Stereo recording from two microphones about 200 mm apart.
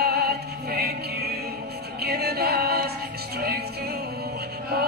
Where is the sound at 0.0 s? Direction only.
50° right (ahead or behind).